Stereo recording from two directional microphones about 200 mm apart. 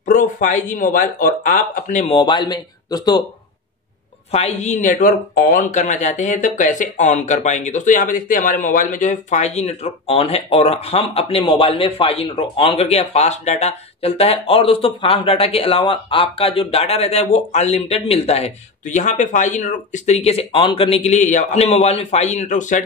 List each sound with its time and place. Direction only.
0.0 s speech: 40° left (ahead or behind)
2.1 s speech: 25° left (ahead or behind)
4.3 s speech: 30° left (ahead or behind)